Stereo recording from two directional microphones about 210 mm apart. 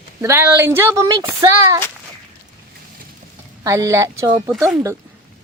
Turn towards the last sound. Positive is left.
turn(degrees=-15)  # may be behind; listen again after turning